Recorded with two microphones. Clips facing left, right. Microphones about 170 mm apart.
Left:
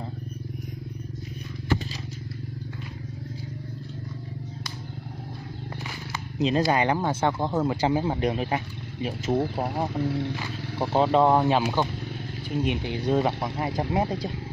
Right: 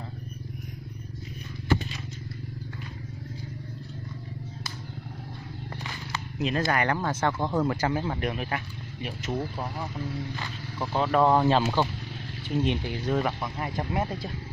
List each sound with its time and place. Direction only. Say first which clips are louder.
5.9 s wild animals: left 1 dB; 10° left (ahead or behind)
6.7 s speech: left 3 dB; 15° left (ahead or behind)
9.6 s speech: left 7 dB; 65° left (ahead or behind)
10.8 s speech: left 3 dB; 30° left (ahead or behind)